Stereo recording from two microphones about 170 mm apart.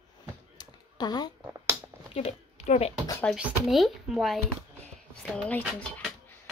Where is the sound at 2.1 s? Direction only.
35° left (ahead or behind).